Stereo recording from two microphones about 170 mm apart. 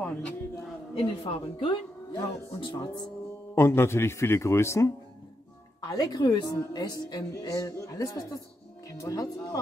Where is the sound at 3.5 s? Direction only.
15° left (ahead or behind).